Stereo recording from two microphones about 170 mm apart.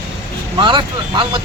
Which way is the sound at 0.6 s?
30° right (ahead or behind).